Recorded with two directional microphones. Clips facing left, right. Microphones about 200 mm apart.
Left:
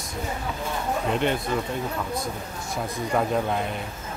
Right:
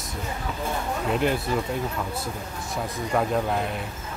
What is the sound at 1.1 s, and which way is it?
Speech, centre (ahead or behind).